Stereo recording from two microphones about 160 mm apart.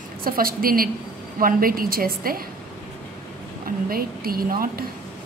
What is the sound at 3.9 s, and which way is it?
Speech, 65° right (ahead or behind).